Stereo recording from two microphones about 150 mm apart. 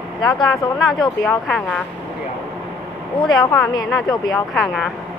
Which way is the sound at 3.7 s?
25° left (ahead or behind).